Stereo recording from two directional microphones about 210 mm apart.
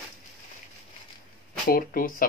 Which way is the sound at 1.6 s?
45° left (ahead or behind).